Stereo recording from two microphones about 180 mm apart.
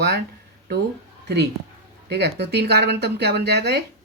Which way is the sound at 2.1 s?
65° right (ahead or behind).